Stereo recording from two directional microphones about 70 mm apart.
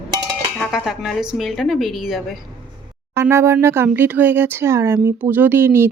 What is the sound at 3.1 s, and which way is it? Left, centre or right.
Speech, right.